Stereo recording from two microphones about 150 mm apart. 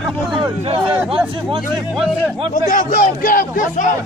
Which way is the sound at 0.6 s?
40° right (ahead or behind).